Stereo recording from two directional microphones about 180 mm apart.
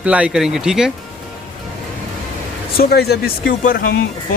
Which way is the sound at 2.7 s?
60° left (ahead or behind).